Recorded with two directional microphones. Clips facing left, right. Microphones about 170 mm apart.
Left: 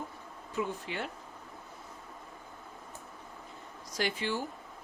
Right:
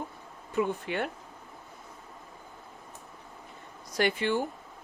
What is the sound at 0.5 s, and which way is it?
Speech, 60° right (ahead or behind).